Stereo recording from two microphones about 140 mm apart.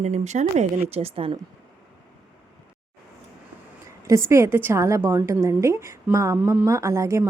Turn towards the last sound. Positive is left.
turn(degrees=-20)  # may be behind; listen again after turning